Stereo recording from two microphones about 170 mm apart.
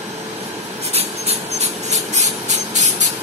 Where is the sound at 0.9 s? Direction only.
40° right (ahead or behind).